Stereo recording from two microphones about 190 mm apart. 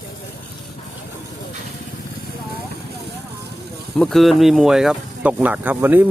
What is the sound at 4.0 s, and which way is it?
Speech, centre (ahead or behind).